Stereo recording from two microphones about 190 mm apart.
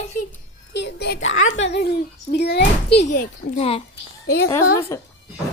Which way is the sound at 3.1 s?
40° left (ahead or behind).